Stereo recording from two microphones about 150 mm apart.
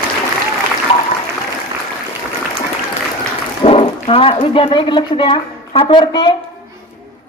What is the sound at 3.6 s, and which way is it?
A woman's voice, 40° left (ahead or behind).